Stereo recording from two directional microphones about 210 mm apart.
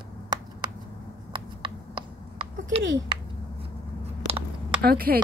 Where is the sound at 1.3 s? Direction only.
20° right (ahead or behind).